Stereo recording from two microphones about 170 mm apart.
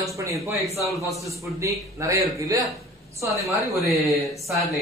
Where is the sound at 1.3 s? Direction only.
20° right (ahead or behind).